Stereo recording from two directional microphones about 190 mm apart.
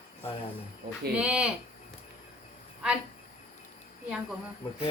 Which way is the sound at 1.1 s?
5° right (ahead or behind).